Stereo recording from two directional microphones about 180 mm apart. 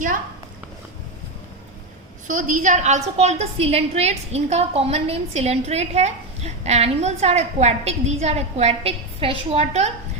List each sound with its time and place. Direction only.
2.2 s a woman's voice: 45° right (ahead or behind)